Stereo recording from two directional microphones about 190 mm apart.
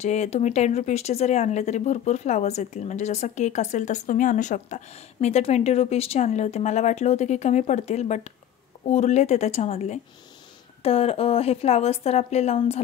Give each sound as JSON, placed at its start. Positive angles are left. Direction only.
{"t": 0.0, "sound": "speech", "side_deg": 35}